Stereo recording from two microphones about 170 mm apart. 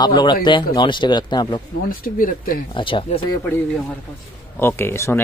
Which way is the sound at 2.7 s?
30° left (ahead or behind).